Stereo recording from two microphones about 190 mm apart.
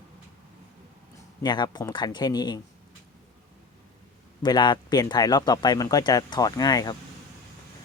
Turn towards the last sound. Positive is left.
turn(degrees=20)  # may be behind; listen again after turning